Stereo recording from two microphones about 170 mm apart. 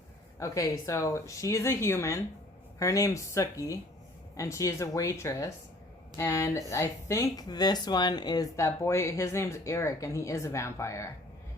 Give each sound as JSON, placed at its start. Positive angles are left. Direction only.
{"t": 0.3, "sound": "a woman's voice", "side_deg": 20}